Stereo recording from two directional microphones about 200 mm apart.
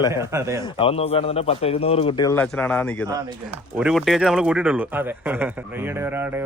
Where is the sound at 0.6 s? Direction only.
30° left (ahead or behind).